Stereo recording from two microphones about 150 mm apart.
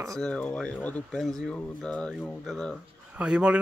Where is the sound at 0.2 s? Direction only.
5° left (ahead or behind).